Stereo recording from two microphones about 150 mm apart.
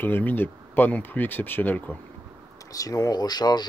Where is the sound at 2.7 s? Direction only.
25° left (ahead or behind).